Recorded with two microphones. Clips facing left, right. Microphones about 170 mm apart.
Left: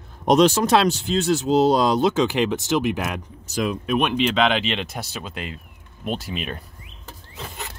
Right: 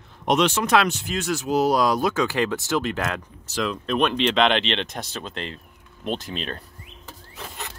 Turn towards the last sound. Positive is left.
turn(degrees=10)  # may be behind; listen again after turning